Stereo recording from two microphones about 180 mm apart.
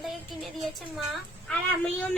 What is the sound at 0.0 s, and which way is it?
Child singing, centre (ahead or behind).